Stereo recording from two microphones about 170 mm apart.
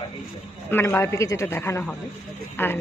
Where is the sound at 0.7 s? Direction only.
15° left (ahead or behind).